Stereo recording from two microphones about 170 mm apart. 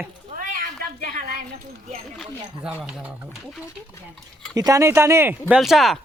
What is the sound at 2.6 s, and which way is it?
Speech, 5° right (ahead or behind).